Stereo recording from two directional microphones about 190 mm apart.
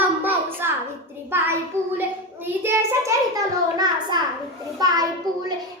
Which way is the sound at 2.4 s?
15° right (ahead or behind).